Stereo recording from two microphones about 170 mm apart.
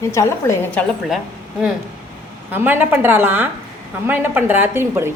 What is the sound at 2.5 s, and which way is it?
A woman's voice, 10° right (ahead or behind).